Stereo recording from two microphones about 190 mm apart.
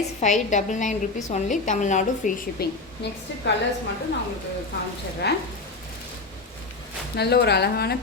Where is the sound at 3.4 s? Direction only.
65° left (ahead or behind).